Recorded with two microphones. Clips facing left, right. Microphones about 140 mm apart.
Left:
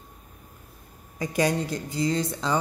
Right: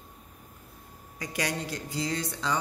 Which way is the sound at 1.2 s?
25° left (ahead or behind).